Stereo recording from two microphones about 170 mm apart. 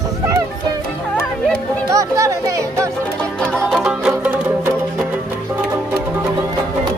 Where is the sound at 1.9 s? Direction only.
20° right (ahead or behind).